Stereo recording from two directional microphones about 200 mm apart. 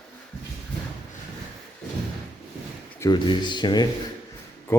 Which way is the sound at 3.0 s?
20° left (ahead or behind).